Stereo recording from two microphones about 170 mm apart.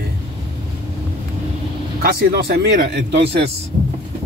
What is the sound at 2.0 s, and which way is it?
Speech, 65° right (ahead or behind).